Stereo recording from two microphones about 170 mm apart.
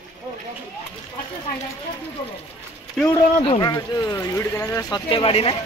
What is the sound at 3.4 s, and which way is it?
Speech, 25° left (ahead or behind).